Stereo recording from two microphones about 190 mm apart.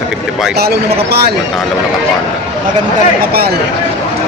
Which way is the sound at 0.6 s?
55° right (ahead or behind).